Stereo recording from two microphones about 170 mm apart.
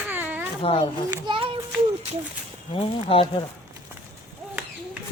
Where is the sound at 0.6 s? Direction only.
30° left (ahead or behind).